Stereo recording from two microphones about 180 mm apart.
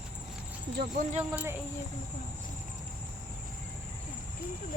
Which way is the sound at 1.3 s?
15° right (ahead or behind).